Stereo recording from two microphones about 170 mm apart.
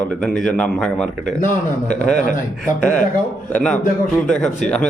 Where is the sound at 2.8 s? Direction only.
5° left (ahead or behind).